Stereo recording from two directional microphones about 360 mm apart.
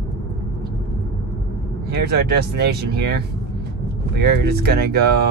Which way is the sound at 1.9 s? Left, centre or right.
Right.